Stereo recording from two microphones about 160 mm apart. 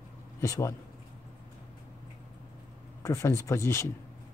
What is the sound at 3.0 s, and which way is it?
Speech, 20° left (ahead or behind).